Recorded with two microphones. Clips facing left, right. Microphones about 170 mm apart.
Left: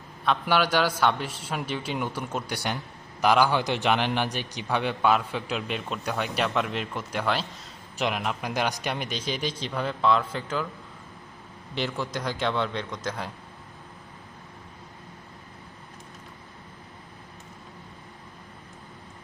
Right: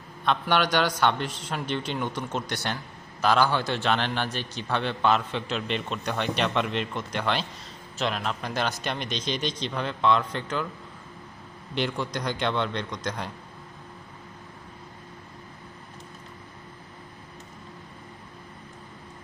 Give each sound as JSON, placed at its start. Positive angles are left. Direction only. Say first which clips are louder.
{"t": 0.3, "sound": "a man's voice", "louder": "even", "side_deg": 5}
{"t": 11.7, "sound": "a man's voice", "louder": "right 1 dB", "side_deg": 5}